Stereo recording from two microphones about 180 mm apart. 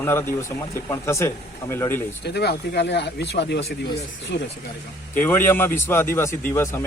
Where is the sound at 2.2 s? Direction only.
65° left (ahead or behind).